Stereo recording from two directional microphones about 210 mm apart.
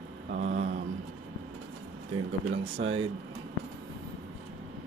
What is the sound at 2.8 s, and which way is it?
Speech, 55° right (ahead or behind).